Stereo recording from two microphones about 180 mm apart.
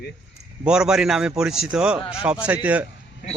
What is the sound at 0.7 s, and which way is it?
A man's voice, 5° right (ahead or behind).